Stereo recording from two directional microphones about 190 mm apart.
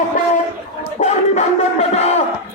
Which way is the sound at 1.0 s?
40° left (ahead or behind).